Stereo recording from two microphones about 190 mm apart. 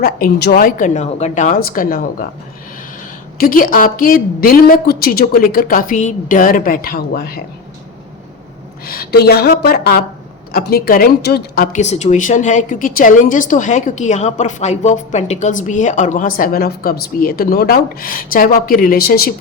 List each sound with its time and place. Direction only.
0.0 s speech: 55° left (ahead or behind)
3.3 s speech: 50° left (ahead or behind)
8.8 s a woman's voice: 50° left (ahead or behind)